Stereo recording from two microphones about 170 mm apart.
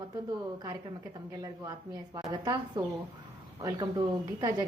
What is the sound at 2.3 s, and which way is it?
A woman's voice, 25° right (ahead or behind).